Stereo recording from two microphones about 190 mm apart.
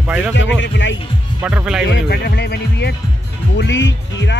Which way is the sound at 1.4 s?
10° right (ahead or behind).